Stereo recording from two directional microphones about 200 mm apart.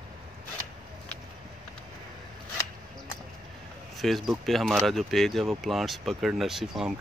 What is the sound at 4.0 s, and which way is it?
Speech, centre (ahead or behind).